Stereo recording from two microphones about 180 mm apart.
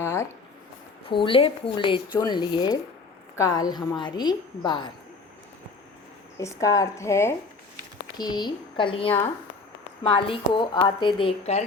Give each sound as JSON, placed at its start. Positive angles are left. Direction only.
{"t": 0.0, "sound": "a sound", "side_deg": 15}
{"t": 1.0, "sound": "a woman's voice", "side_deg": 30}
{"t": 6.4, "sound": "a woman's voice", "side_deg": 20}